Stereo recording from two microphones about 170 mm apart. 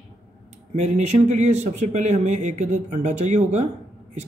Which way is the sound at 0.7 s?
40° right (ahead or behind).